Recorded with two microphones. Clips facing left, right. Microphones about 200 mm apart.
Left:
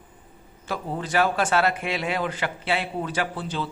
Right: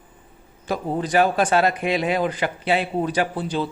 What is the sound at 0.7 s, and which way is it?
A man's voice, 15° right (ahead or behind).